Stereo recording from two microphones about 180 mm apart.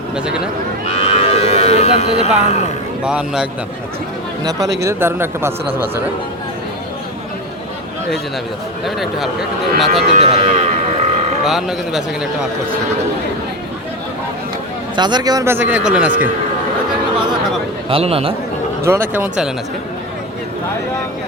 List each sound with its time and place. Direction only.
0.9 s cattle: 35° left (ahead or behind)
3.0 s speech: 5° right (ahead or behind)
4.8 s a man's voice: 15° right (ahead or behind)
8.8 s speech: centre (ahead or behind)
10.1 s speech: 35° right (ahead or behind)
11.4 s speech: centre (ahead or behind)
14.9 s a man's voice: 25° right (ahead or behind); by 16.1 s 5° right (ahead or behind)
17.8 s speech: 30° right (ahead or behind)
18.9 s a man's voice: 10° right (ahead or behind)